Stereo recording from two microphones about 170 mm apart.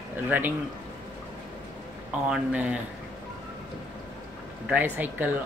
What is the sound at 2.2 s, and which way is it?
Speech, 5° right (ahead or behind).